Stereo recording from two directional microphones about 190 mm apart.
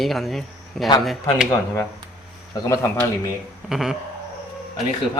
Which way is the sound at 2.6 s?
15° left (ahead or behind).